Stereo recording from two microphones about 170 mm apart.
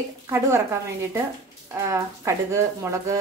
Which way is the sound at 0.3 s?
15° right (ahead or behind).